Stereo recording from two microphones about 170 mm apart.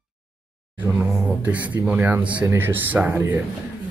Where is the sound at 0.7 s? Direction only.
10° right (ahead or behind).